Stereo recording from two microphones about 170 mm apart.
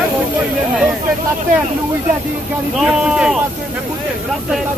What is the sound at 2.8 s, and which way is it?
Speech, centre (ahead or behind).